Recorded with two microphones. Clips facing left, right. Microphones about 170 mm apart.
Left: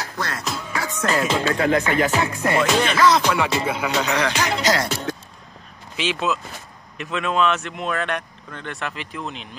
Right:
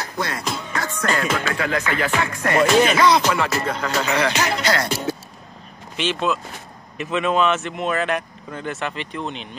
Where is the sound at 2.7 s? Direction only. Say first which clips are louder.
Right 4 dB; 10° right (ahead or behind).